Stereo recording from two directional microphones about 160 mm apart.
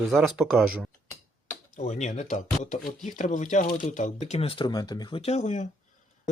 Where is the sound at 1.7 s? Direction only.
45° left (ahead or behind).